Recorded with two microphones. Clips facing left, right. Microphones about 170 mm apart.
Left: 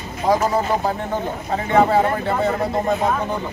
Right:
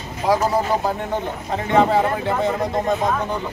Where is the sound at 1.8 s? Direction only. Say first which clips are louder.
Left 1 dB; 10° left (ahead or behind).